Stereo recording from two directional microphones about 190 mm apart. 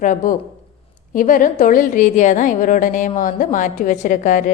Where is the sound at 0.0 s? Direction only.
45° left (ahead or behind).